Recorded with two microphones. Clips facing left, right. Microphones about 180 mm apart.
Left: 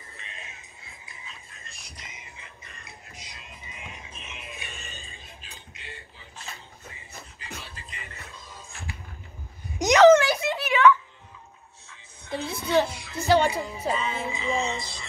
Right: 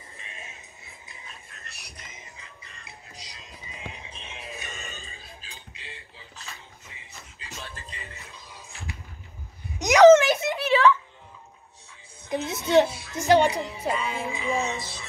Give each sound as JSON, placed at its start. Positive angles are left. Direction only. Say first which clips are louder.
{"t": 1.5, "sound": "a sound", "louder": "right 1 dB", "side_deg": -65}
{"t": 3.2, "sound": "music", "louder": "right 1 dB", "side_deg": -35}
{"t": 10.0, "sound": "a sound", "louder": "right 3 dB", "side_deg": -20}
{"t": 10.7, "sound": "music", "louder": "even", "side_deg": -30}
{"t": 12.3, "sound": "music", "louder": "right 2 dB", "side_deg": -20}
{"t": 12.8, "sound": "music", "louder": "right 2 dB", "side_deg": -10}
{"t": 14.1, "sound": "music", "louder": "right 1 dB", "side_deg": 0}